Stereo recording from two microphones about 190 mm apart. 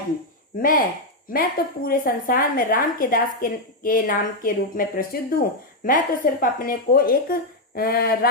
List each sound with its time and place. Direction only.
0.6 s a woman's voice: 45° left (ahead or behind)